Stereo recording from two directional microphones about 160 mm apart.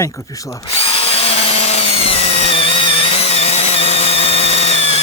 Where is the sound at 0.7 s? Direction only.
35° left (ahead or behind).